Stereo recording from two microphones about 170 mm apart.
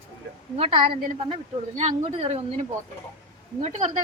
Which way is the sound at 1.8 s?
40° right (ahead or behind).